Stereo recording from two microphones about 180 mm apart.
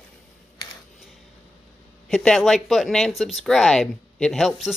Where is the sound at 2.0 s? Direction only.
Centre (ahead or behind).